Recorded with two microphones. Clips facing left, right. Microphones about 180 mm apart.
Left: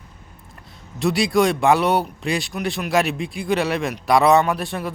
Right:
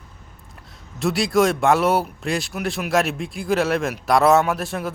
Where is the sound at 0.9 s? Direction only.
Centre (ahead or behind).